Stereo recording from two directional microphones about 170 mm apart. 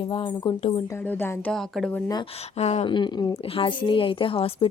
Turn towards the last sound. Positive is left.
turn(degrees=30)  # may be behind; listen again after turning